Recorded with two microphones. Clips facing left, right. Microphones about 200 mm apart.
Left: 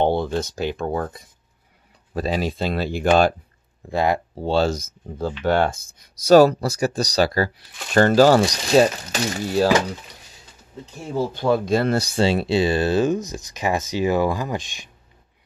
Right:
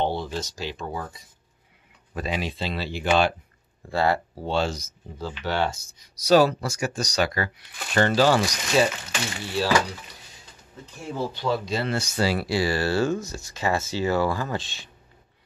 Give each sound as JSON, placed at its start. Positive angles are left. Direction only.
{"t": 0.0, "sound": "speech", "side_deg": 55}
{"t": 2.1, "sound": "speech", "side_deg": 35}
{"t": 3.9, "sound": "speech", "side_deg": 15}
{"t": 4.5, "sound": "speech", "side_deg": 40}
{"t": 7.9, "sound": "speech", "side_deg": 45}
{"t": 8.4, "sound": "speech", "side_deg": 35}
{"t": 11.3, "sound": "speech", "side_deg": 50}